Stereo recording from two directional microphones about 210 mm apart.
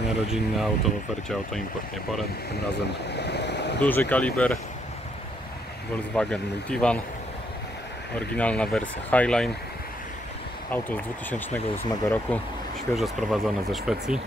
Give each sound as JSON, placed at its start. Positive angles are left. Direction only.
{"t": 0.3, "sound": "speech", "side_deg": 0}
{"t": 3.1, "sound": "boat", "side_deg": 55}
{"t": 3.8, "sound": "speech", "side_deg": 10}
{"t": 6.1, "sound": "speech", "side_deg": 5}
{"t": 8.4, "sound": "speech", "side_deg": 5}
{"t": 10.7, "sound": "speech", "side_deg": 10}